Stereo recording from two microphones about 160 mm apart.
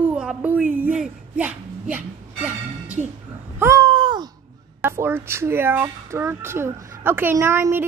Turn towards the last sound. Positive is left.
turn(degrees=-15)  # may be behind; listen again after turning